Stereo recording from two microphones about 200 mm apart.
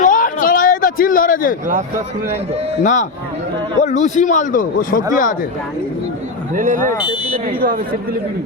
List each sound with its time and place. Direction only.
0.0 s a sound: 45° left (ahead or behind)
2.8 s a man's voice: 40° left (ahead or behind)
6.5 s speech: 40° right (ahead or behind)
7.3 s speech: 30° right (ahead or behind)